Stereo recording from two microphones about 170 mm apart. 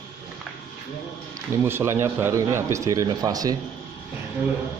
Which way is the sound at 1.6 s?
15° right (ahead or behind).